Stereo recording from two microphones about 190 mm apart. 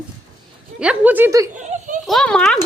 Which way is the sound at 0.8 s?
5° right (ahead or behind).